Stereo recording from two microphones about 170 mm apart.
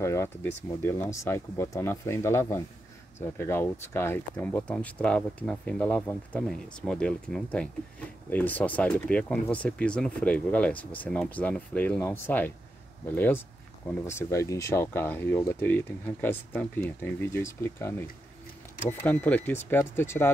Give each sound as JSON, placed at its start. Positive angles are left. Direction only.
{"t": 0.0, "sound": "speech", "side_deg": 15}